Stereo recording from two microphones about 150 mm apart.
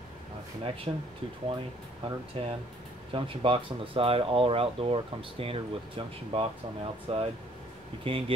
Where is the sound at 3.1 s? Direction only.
35° right (ahead or behind).